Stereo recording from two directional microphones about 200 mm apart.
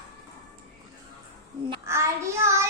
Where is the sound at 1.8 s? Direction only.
15° right (ahead or behind).